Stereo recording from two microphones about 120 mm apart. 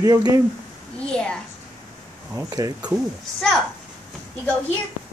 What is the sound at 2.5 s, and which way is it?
Speech, 30° right (ahead or behind).